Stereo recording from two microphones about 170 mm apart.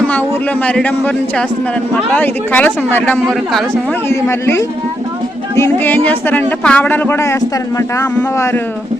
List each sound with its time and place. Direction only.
0.1 s speech: 10° left (ahead or behind)